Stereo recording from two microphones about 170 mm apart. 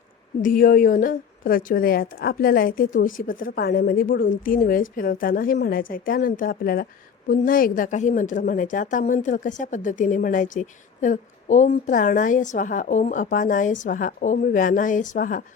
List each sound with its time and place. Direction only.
0.4 s a woman's voice: 55° left (ahead or behind)